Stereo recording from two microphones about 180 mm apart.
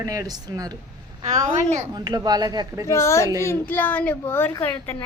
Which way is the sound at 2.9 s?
15° left (ahead or behind).